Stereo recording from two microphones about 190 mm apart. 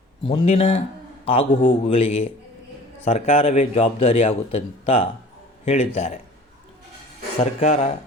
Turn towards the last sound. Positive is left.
turn(degrees=35)  # may be behind; listen again after turning